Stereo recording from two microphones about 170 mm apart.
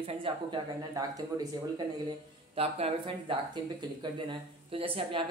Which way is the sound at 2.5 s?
35° right (ahead or behind).